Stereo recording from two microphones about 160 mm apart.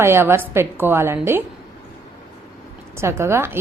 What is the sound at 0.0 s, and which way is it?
A woman's voice, 15° right (ahead or behind).